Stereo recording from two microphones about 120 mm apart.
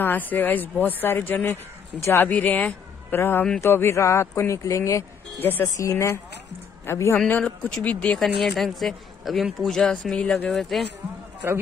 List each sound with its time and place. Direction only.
0.0 s speech: 15° left (ahead or behind)
7.2 s speech: 10° left (ahead or behind)